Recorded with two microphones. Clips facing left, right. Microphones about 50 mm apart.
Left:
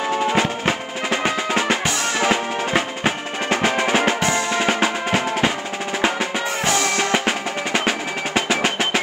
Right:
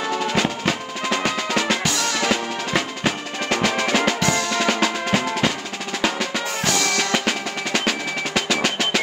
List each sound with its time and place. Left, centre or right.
0.3 s drum: left
8.4 s percussion: left